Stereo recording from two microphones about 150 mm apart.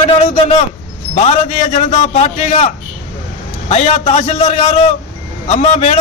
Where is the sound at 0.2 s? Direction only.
50° left (ahead or behind).